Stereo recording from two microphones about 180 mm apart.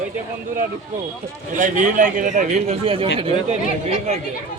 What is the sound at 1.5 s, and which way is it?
A man's voice, 45° right (ahead or behind).